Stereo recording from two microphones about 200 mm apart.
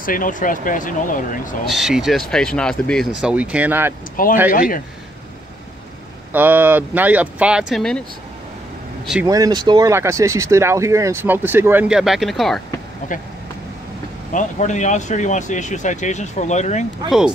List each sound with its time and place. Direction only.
0.0 s speech: 45° left (ahead or behind)
1.7 s speech: centre (ahead or behind)
4.5 s a man's voice: 45° left (ahead or behind)
6.3 s speech: 10° right (ahead or behind)
9.0 s speech: 5° right (ahead or behind)
9.3 s speech: 20° right (ahead or behind); by 12.6 s centre (ahead or behind)
14.3 s speech: 35° left (ahead or behind)